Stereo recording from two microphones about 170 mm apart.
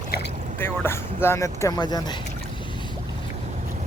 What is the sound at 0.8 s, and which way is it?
Speech, 15° left (ahead or behind).